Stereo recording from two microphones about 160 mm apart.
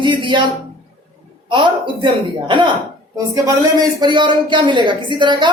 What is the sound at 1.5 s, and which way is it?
Speech, 30° right (ahead or behind).